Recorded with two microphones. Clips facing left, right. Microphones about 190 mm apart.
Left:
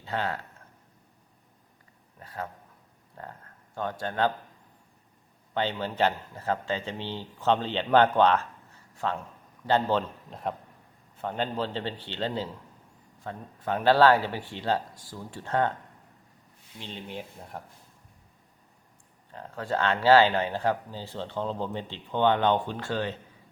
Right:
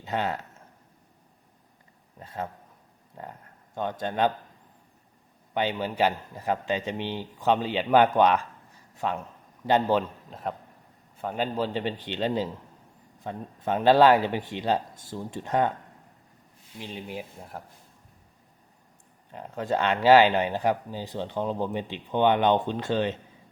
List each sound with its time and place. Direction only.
0.0 s speech: 20° right (ahead or behind)
2.1 s a man's voice: 25° right (ahead or behind)
5.5 s speech: 15° right (ahead or behind)
10.2 s a man's voice: centre (ahead or behind)
16.8 s speech: 10° right (ahead or behind)
19.3 s speech: 20° right (ahead or behind)